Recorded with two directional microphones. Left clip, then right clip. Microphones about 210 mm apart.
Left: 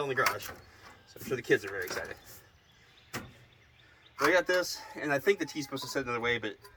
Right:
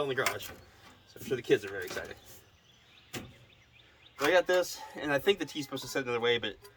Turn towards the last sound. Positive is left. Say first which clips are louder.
# right 2 dB
turn(degrees=-10)  # may be behind; listen again after turning